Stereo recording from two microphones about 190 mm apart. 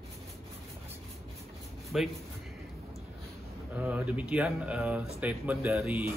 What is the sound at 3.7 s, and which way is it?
Speech, 5° right (ahead or behind).